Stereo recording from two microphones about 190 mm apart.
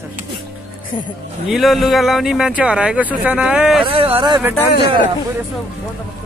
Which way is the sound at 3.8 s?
30° right (ahead or behind).